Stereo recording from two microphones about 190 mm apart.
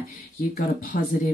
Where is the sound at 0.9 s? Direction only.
45° left (ahead or behind).